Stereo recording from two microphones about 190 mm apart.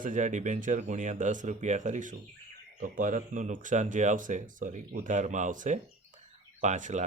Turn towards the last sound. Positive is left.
turn(degrees=-40)  # may be behind; listen again after turning